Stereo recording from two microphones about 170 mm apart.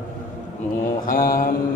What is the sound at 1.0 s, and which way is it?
Mantra, 55° left (ahead or behind).